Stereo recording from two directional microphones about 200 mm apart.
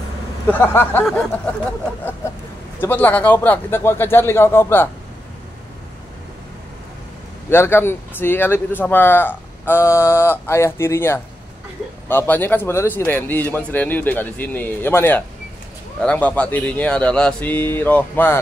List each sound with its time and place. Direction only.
0.5 s a man's voice: 10° left (ahead or behind)
2.8 s a man's voice: 10° left (ahead or behind)
7.4 s a man's voice: 10° left (ahead or behind)